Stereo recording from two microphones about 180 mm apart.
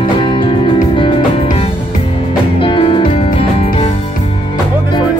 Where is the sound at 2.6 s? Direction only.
30° left (ahead or behind).